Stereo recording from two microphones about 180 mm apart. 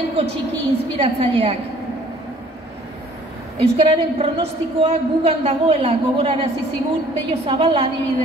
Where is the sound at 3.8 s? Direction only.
30° right (ahead or behind).